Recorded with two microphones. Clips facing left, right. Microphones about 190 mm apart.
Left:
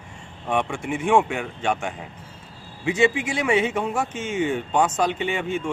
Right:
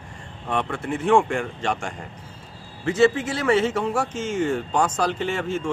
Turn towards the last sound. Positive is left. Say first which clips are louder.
# even
turn(degrees=10)  # may be behind; listen again after turning